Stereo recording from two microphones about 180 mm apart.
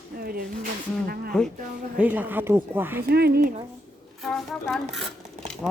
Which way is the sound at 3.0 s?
60° right (ahead or behind).